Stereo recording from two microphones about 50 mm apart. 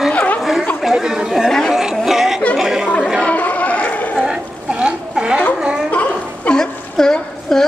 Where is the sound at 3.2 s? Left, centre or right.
Left.